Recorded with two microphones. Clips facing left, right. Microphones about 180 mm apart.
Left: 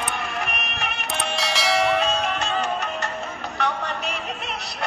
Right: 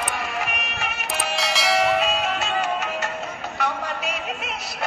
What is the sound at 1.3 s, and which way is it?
Church bell, centre (ahead or behind).